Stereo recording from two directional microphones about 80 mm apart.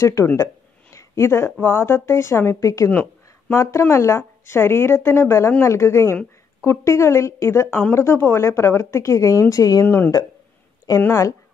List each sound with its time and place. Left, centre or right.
0.0 s a woman's voice: left
2.9 s a sound: left
3.5 s a woman's voice: left
9.8 s a woman's voice: left